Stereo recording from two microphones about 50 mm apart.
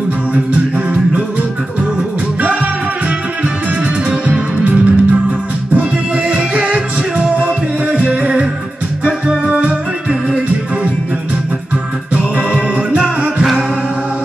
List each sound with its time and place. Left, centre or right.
4.3 s music: right
12.9 s music: right
13.4 s music: centre